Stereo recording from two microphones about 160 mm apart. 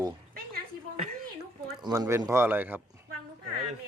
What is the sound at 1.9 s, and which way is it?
Speech, 15° right (ahead or behind).